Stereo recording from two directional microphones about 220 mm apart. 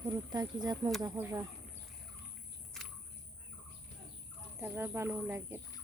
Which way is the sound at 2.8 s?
Centre (ahead or behind).